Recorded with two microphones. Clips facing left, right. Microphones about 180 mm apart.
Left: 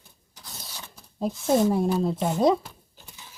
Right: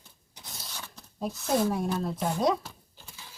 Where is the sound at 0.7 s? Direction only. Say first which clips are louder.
Right 3 dB; 10° left (ahead or behind).